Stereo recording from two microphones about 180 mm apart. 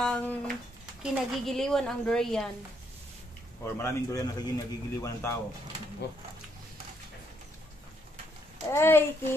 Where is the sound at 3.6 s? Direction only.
15° left (ahead or behind).